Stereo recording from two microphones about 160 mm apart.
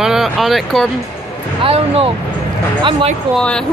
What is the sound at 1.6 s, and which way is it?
Speech, 35° right (ahead or behind).